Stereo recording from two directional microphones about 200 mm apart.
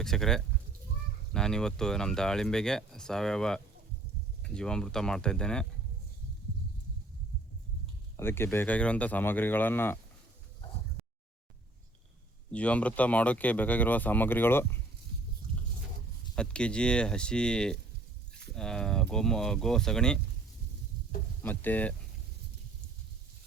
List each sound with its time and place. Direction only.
0.0 s speech: centre (ahead or behind)
8.1 s speech: 10° left (ahead or behind)
12.5 s speech: 5° left (ahead or behind)
15.4 s a sound: 45° right (ahead or behind)
16.3 s speech: 5° left (ahead or behind)
21.4 s speech: 10° left (ahead or behind)